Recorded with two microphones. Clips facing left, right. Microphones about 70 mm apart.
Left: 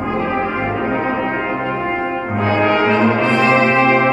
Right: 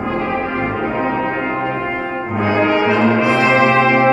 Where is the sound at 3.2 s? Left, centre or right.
Centre.